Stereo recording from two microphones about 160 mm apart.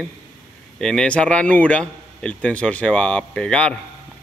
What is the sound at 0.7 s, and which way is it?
Speech, 5° left (ahead or behind).